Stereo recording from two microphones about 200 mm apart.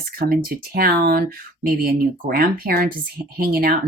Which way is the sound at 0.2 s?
45° right (ahead or behind).